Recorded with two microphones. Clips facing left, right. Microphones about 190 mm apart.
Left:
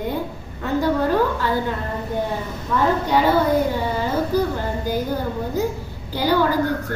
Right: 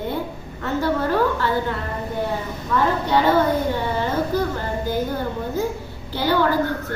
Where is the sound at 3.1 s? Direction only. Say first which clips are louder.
Right 1 dB; 10° left (ahead or behind).